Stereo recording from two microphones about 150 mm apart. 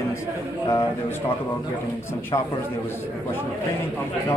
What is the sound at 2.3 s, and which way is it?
Speech, 30° left (ahead or behind).